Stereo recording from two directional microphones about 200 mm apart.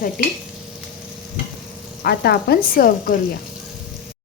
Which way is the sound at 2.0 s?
55° left (ahead or behind).